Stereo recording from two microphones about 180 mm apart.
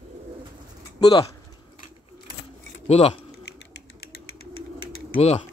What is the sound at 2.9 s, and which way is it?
Speech, 35° left (ahead or behind).